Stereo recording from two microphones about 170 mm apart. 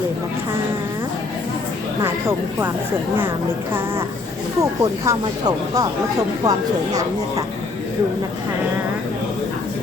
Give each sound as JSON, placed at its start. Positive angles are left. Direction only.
{"t": 3.7, "sound": "speech", "side_deg": -15}